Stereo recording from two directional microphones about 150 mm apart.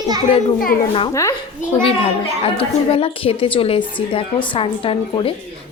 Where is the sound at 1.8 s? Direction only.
40° left (ahead or behind).